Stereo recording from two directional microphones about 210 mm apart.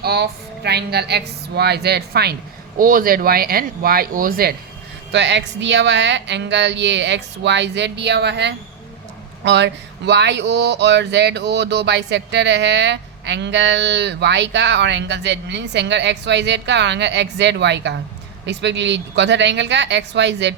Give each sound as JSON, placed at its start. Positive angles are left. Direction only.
{"t": 0.0, "sound": "a woman's voice", "side_deg": -50}
{"t": 5.1, "sound": "speech", "side_deg": -55}